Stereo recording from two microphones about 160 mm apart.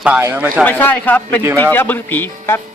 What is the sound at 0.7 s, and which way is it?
A man's voice, 10° left (ahead or behind).